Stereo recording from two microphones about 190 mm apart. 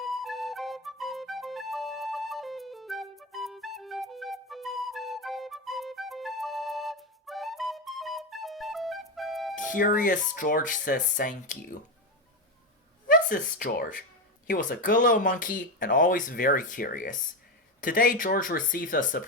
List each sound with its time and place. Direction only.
0.0 s music: centre (ahead or behind)
9.6 s speech: 45° left (ahead or behind)
13.1 s speech: 50° left (ahead or behind)